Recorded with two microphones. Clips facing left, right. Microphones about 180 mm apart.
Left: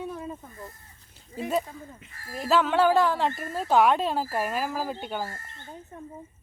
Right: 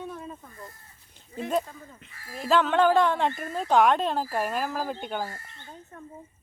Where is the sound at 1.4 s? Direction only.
10° left (ahead or behind).